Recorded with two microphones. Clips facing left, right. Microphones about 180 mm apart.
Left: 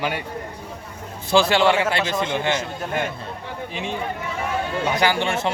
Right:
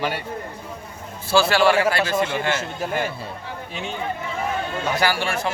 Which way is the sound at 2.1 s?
10° right (ahead or behind).